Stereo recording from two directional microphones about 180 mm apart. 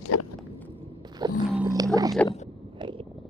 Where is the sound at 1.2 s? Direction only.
25° right (ahead or behind).